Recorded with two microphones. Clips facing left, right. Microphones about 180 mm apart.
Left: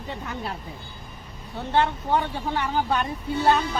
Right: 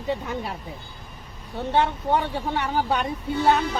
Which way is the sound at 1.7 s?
15° right (ahead or behind).